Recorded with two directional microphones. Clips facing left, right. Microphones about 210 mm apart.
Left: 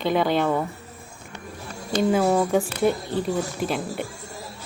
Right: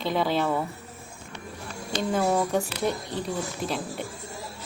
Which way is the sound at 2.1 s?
5° left (ahead or behind).